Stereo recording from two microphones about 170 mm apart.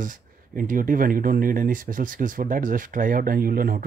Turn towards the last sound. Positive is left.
turn(degrees=-60)  # may be behind; listen again after turning